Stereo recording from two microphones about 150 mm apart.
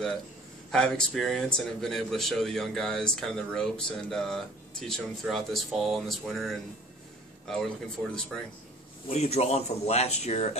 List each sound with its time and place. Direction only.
0.7 s speech: 5° left (ahead or behind)
9.1 s speech: 45° left (ahead or behind)